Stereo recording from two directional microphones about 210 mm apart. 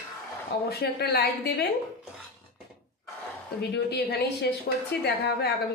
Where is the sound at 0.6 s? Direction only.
50° left (ahead or behind).